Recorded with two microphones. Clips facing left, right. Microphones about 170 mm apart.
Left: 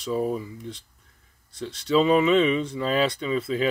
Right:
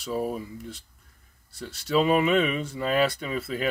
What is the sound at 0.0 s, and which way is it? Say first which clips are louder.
Speech: left 3 dB; 5° right (ahead or behind).